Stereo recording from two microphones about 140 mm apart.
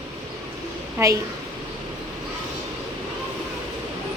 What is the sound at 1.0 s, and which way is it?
Speech, 20° right (ahead or behind).